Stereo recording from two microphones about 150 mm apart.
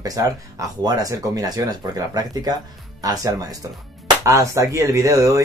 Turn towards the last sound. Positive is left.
turn(degrees=-20)  # may be behind; listen again after turning